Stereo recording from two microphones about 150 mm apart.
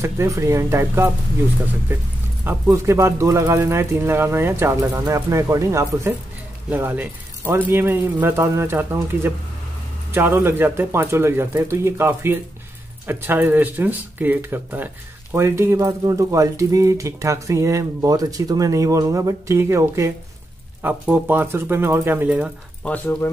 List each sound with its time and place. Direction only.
0.0 s speech: 20° right (ahead or behind)
2.4 s speech: 15° right (ahead or behind)
22.8 s speech: 10° left (ahead or behind)